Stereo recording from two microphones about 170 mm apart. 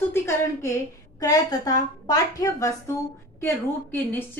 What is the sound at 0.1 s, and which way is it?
A woman's voice, 15° left (ahead or behind).